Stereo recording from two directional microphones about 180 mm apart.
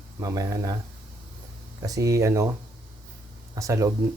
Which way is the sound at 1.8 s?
20° right (ahead or behind).